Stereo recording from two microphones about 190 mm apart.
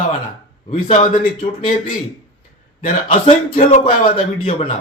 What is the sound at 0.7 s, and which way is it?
Speech, 40° left (ahead or behind).